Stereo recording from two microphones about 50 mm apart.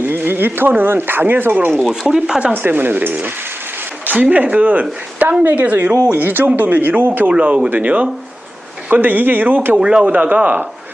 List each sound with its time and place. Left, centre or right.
0.3 s speech: right
2.1 s speech: centre
2.5 s speech: right
6.1 s speech: right
7.3 s speech: right
7.7 s speech: right
9.7 s speech: centre
10.1 s speech: right